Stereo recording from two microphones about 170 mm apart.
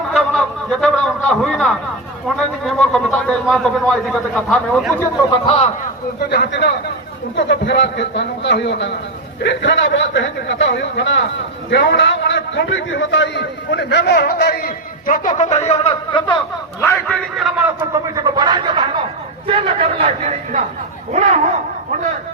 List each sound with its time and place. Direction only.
0.1 s a man's voice: centre (ahead or behind)
5.5 s a man's voice: 35° left (ahead or behind)
6.3 s a man's voice: 80° left
11.7 s speech: 80° left
12.5 s a man's voice: 90° left; by 16.4 s 30° left (ahead or behind)
16.8 s a man's voice: 15° left (ahead or behind)
17.3 s speech: centre (ahead or behind)
18.1 s a man's voice: 25° right (ahead or behind); by 21.4 s 40° right (ahead or behind)